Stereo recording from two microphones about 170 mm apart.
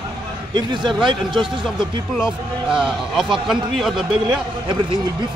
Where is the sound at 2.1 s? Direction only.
5° right (ahead or behind).